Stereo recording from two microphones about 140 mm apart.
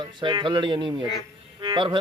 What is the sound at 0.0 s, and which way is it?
Music, 35° right (ahead or behind).